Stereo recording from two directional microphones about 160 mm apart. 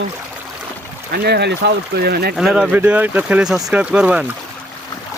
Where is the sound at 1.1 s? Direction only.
90° right.